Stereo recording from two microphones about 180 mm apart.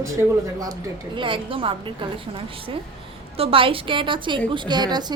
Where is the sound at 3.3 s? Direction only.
30° right (ahead or behind).